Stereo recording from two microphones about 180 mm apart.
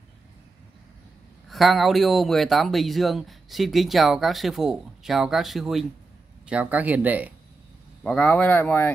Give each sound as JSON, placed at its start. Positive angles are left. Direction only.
{"t": 1.5, "sound": "speech", "side_deg": 0}
{"t": 8.0, "sound": "speech", "side_deg": 0}